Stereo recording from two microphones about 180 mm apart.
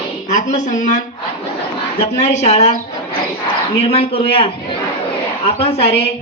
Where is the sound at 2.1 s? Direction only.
40° left (ahead or behind).